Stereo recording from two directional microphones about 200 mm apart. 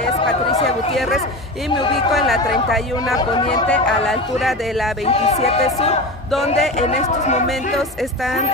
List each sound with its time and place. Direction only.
0.5 s a sound: 30° left (ahead or behind)
2.1 s speech: centre (ahead or behind)
3.2 s speech: 20° left (ahead or behind)
3.6 s speech: 5° left (ahead or behind)
5.0 s speech: 30° left (ahead or behind)